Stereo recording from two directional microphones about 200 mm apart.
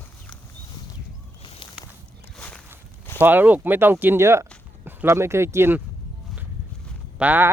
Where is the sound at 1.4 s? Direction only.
25° left (ahead or behind).